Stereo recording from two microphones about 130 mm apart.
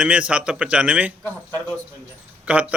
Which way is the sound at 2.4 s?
10° right (ahead or behind).